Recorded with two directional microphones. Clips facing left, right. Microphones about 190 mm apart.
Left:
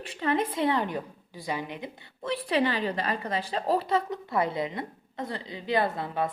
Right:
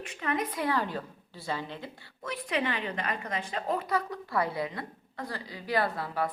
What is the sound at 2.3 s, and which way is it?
A woman's voice, 35° left (ahead or behind).